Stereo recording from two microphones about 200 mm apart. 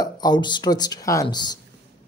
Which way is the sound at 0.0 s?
20° left (ahead or behind).